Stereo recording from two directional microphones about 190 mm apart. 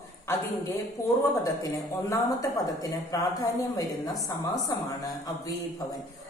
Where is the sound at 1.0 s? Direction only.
15° left (ahead or behind).